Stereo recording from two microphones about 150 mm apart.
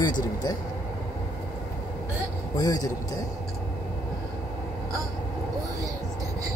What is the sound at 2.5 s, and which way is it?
Speech, 25° left (ahead or behind).